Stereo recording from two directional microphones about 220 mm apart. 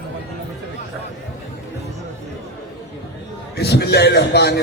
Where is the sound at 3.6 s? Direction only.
50° left (ahead or behind).